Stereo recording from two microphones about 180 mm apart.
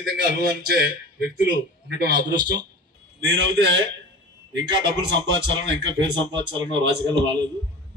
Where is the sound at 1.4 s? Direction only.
70° right (ahead or behind).